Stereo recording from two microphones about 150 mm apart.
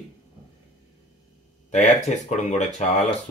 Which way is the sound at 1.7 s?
50° left (ahead or behind).